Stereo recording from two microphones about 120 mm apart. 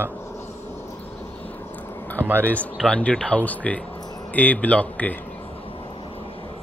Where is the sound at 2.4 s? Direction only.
10° left (ahead or behind).